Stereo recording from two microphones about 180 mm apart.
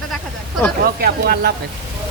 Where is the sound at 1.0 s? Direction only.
60° right (ahead or behind).